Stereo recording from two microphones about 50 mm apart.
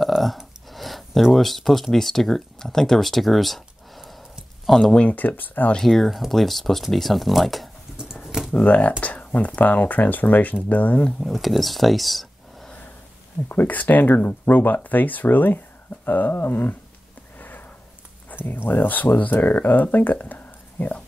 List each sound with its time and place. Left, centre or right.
0.0 s a sound: centre
1.3 s speech: centre
4.9 s speech: left
5.8 s speech: centre
8.3 s a sound: centre
8.6 s speech: left
9.0 s a sound: left
9.6 s speech: left
11.1 s speech: centre
13.5 s speech: left
17.4 s sniff: left
18.3 s speech: left